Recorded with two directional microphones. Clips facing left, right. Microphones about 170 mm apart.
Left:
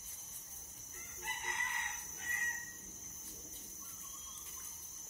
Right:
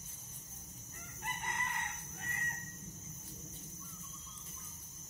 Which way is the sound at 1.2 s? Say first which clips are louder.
Right 4 dB; 50° right (ahead or behind).